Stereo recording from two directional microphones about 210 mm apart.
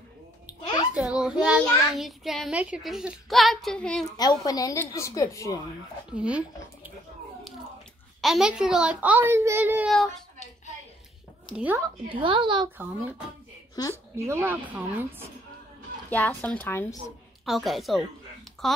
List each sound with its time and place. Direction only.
0.5 s a child's voice: 5° right (ahead or behind)
4.2 s a woman's voice: 20° left (ahead or behind)
6.1 s speech: 5° right (ahead or behind)
8.2 s a child's voice: centre (ahead or behind)
11.5 s a woman's voice: 5° right (ahead or behind)
12.1 s a woman's voice: 25° right (ahead or behind)
13.8 s a woman's voice: 20° left (ahead or behind)
14.1 s a woman's voice: 15° right (ahead or behind)
16.1 s a woman's voice: 10° left (ahead or behind)